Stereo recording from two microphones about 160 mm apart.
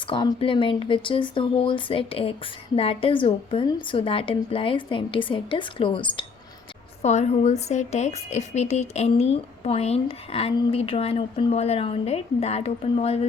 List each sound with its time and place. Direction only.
0.1 s a woman's voice: 30° left (ahead or behind)
7.0 s a woman's voice: 45° left (ahead or behind)